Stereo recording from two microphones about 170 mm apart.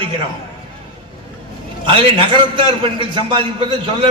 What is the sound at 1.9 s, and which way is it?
A man's voice, 30° right (ahead or behind).